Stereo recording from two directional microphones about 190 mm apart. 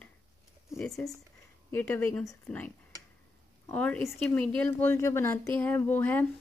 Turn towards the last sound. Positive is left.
turn(degrees=10)  # may be behind; listen again after turning